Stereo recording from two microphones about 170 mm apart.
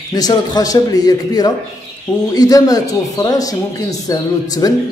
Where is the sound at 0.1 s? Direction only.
25° left (ahead or behind).